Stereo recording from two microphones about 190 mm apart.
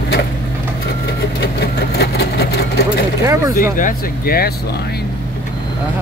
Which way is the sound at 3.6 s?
45° left (ahead or behind).